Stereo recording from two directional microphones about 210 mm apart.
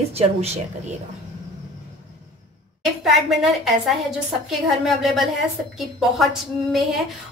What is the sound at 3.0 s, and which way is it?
A woman's voice, centre (ahead or behind).